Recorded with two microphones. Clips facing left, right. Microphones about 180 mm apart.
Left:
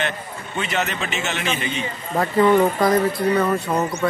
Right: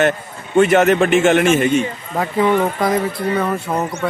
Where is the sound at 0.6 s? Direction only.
50° right (ahead or behind).